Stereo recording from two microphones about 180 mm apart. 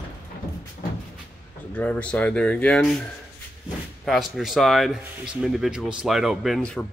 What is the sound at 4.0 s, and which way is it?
Speech, centre (ahead or behind).